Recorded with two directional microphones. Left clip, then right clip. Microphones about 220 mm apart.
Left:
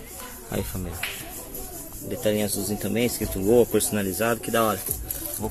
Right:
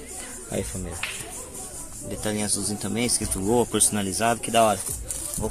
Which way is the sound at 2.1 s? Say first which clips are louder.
Left 5 dB; 5° right (ahead or behind).